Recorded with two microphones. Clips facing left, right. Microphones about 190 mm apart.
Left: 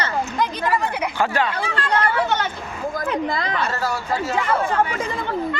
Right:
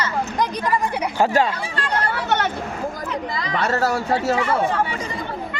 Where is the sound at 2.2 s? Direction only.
65° right (ahead or behind).